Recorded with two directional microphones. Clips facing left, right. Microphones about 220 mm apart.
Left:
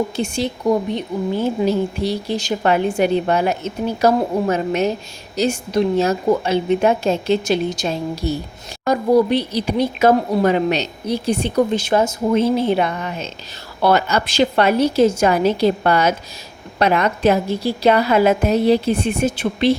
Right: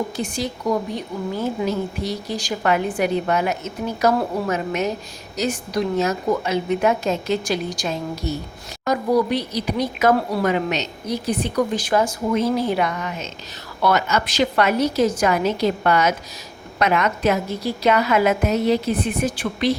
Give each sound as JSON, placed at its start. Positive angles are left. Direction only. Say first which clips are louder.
{"t": 0.2, "sound": "a woman's voice", "louder": "left 4 dB", "side_deg": 25}